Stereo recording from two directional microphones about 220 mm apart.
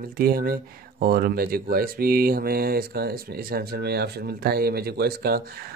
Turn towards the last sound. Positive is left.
turn(degrees=-45)  # may be behind; listen again after turning